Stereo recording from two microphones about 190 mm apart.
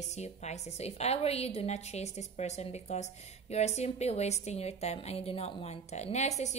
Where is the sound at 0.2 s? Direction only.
35° left (ahead or behind).